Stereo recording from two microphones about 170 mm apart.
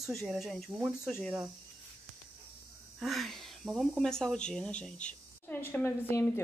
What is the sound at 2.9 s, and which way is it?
Speech, centre (ahead or behind).